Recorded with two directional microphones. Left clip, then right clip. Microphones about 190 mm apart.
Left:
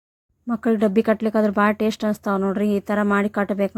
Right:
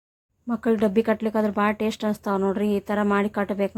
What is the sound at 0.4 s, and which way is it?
Speech, 20° left (ahead or behind).